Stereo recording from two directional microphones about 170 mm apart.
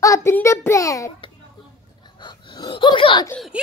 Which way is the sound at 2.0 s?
25° left (ahead or behind).